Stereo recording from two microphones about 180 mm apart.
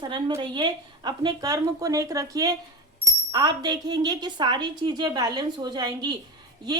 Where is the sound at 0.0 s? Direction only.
25° right (ahead or behind).